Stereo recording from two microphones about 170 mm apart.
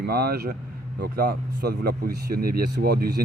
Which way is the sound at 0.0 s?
65° right (ahead or behind).